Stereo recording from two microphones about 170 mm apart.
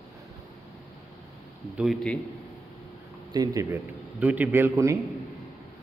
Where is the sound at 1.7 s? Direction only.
Centre (ahead or behind).